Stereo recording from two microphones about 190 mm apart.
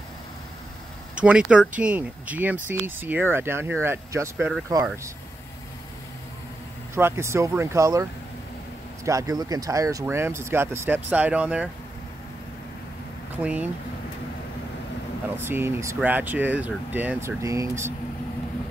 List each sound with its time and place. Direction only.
1.1 s speech: 5° right (ahead or behind)
7.0 s speech: 15° right (ahead or behind)
13.4 s speech: 5° right (ahead or behind)
15.3 s speech: 10° right (ahead or behind)